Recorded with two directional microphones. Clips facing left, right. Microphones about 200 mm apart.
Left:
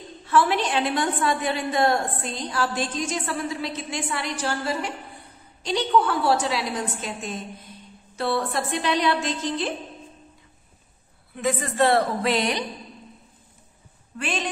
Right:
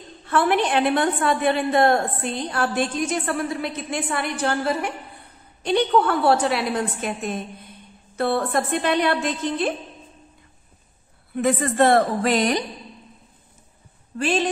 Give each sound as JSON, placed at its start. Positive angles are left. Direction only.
{"t": 0.2, "sound": "a woman's voice", "side_deg": -55}
{"t": 11.3, "sound": "a woman's voice", "side_deg": -50}
{"t": 14.1, "sound": "a woman's voice", "side_deg": -40}